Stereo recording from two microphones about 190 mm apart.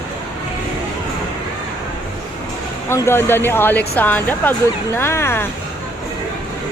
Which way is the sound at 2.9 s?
15° left (ahead or behind).